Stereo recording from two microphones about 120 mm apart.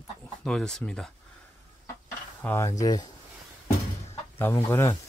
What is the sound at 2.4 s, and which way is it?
Speech, 20° left (ahead or behind).